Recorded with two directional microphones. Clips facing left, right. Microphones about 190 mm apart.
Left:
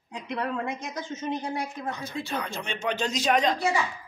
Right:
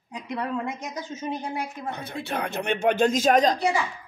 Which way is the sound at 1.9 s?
60° right (ahead or behind).